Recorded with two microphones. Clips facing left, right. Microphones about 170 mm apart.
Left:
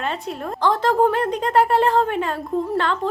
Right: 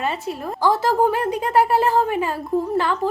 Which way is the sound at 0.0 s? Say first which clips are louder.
Right 1 dB; 5° right (ahead or behind).